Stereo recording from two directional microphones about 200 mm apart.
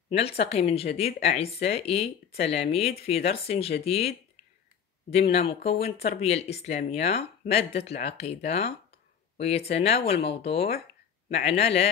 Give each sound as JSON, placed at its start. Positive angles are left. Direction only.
{"t": 0.1, "sound": "speech", "side_deg": 30}
{"t": 5.3, "sound": "speech", "side_deg": 30}